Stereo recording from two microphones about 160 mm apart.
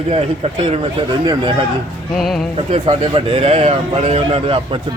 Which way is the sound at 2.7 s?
35° right (ahead or behind).